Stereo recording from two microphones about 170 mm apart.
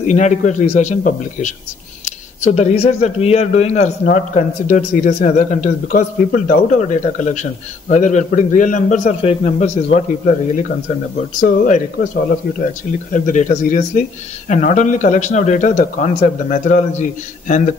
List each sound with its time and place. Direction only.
0.0 s a man's voice: 45° left (ahead or behind)
2.0 s a sound: 40° left (ahead or behind)
2.8 s a man's voice: 35° left (ahead or behind)
9.2 s a man's voice: 35° left (ahead or behind)
13.1 s a man's voice: 50° left (ahead or behind)